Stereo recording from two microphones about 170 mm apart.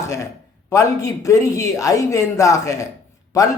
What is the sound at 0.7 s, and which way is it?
Speech, 20° left (ahead or behind).